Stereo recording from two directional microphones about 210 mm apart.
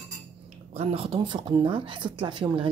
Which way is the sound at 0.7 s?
30° right (ahead or behind).